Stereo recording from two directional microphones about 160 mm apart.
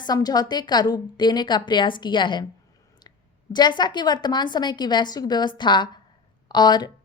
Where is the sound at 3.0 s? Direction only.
25° left (ahead or behind).